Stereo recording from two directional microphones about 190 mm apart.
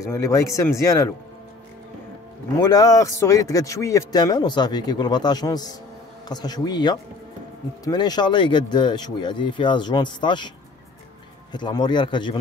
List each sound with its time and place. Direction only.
0.1 s speech: 15° left (ahead or behind)
2.6 s a man's voice: 20° left (ahead or behind)
11.5 s a man's voice: 25° left (ahead or behind)